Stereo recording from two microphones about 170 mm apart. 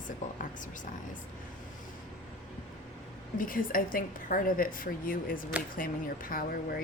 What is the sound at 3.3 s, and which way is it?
Speech, 55° left (ahead or behind).